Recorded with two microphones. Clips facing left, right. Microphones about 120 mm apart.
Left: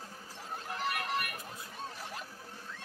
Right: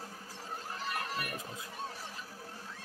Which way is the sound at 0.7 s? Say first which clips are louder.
Left 4 dB; 65° left (ahead or behind).